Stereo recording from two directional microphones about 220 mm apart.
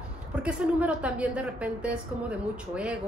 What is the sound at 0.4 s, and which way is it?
A woman's voice, 5° right (ahead or behind).